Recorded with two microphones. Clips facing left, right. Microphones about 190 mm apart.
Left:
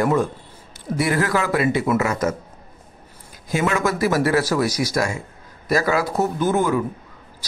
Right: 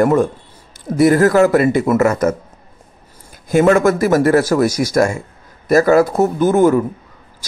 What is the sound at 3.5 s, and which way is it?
A man's voice, 50° right (ahead or behind).